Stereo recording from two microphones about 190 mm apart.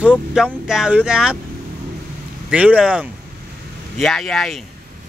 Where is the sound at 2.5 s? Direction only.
5° right (ahead or behind).